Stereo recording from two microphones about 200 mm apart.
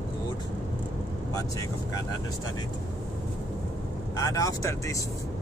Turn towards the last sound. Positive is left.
turn(degrees=15)  # may be behind; listen again after turning